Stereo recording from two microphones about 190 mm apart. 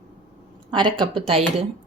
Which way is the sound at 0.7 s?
25° right (ahead or behind).